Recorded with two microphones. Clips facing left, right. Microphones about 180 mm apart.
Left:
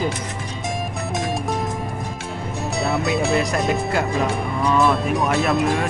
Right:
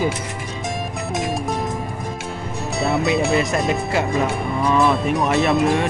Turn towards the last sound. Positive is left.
turn(degrees=0)  # may be behind; listen again after turning